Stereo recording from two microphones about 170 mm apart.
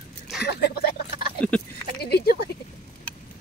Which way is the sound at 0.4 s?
70° left (ahead or behind).